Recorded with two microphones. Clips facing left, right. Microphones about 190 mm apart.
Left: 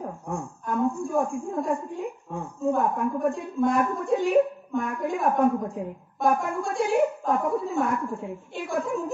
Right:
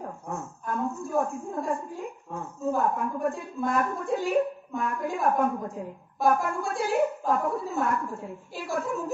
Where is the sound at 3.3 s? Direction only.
Centre (ahead or behind).